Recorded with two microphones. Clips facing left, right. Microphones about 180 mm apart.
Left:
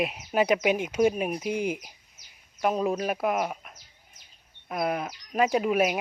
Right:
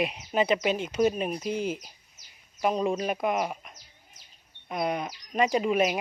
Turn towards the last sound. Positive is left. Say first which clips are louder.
# left 1 dB
turn(degrees=5)  # may be behind; listen again after turning